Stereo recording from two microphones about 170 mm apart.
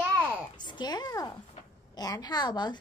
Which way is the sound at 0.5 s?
25° left (ahead or behind).